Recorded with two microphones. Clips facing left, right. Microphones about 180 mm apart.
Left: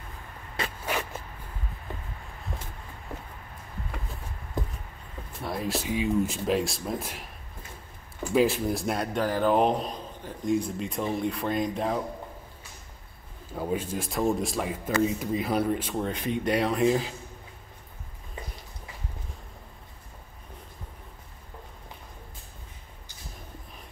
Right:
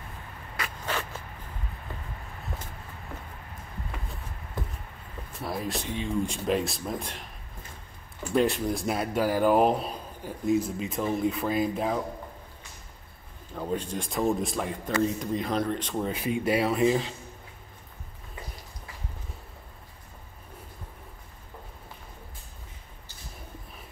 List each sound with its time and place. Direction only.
0.6 s a sound: 25° left (ahead or behind)
2.5 s vehicle: centre (ahead or behind)
5.4 s a man's voice: centre (ahead or behind)
8.3 s a man's voice: centre (ahead or behind)
13.5 s a man's voice: 10° left (ahead or behind)
16.1 s a man's voice: 10° right (ahead or behind)